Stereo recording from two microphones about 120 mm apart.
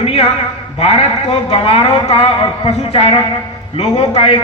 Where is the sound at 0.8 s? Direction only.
60° left (ahead or behind).